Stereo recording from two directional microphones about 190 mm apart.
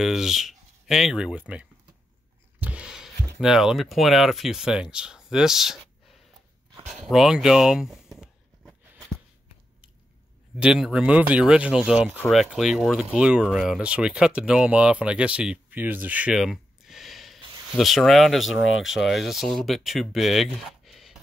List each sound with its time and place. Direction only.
0.0 s speech: centre (ahead or behind)
2.6 s a sound: 5° right (ahead or behind)
3.3 s speech: centre (ahead or behind)
4.9 s a sound: 5° right (ahead or behind)
6.9 s speech: centre (ahead or behind)
10.6 s speech: 5° right (ahead or behind)
18.6 s speech: 90° left
18.9 s speech: centre (ahead or behind)